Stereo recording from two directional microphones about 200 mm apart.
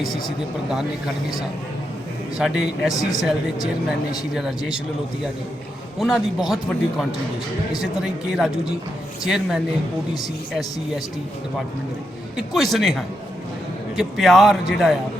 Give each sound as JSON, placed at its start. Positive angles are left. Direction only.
{"t": 0.7, "sound": "a man's voice", "side_deg": 0}
{"t": 2.9, "sound": "speech", "side_deg": 15}
{"t": 4.4, "sound": "a man's voice", "side_deg": -5}
{"t": 6.0, "sound": "a man's voice", "side_deg": 0}
{"t": 8.4, "sound": "a man's voice", "side_deg": 0}
{"t": 12.4, "sound": "a man's voice", "side_deg": 0}